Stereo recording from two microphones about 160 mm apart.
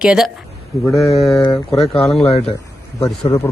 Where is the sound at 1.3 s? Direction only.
20° left (ahead or behind).